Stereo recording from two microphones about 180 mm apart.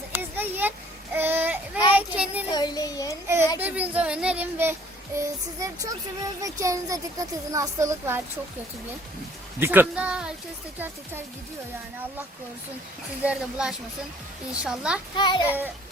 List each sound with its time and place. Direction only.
0.1 s a sound: 10° right (ahead or behind)
2.0 s child singing: 5° right (ahead or behind)
2.5 s child singing: 20° left (ahead or behind)
3.2 s speech: 15° right (ahead or behind)
9.6 s speech: 10° right (ahead or behind)
13.2 s speech: 5° right (ahead or behind)
15.1 s child singing: 25° left (ahead or behind)